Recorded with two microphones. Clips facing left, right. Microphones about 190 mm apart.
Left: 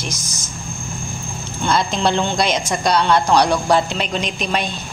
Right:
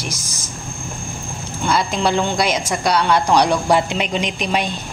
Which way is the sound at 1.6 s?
5° right (ahead or behind).